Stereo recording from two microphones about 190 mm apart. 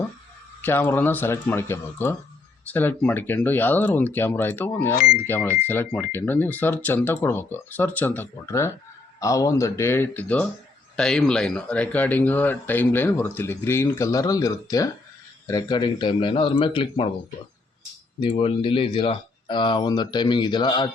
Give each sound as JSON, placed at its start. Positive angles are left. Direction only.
{"t": 0.6, "sound": "speech", "side_deg": 10}
{"t": 18.2, "sound": "speech", "side_deg": 25}